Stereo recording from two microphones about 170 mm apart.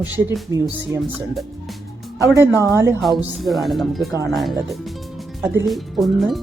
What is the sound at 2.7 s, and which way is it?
Speech, 15° right (ahead or behind).